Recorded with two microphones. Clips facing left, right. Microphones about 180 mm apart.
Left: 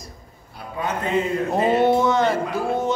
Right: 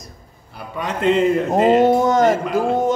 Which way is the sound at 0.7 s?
80° right.